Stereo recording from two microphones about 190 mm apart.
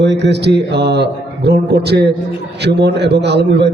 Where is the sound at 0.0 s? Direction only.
65° right (ahead or behind).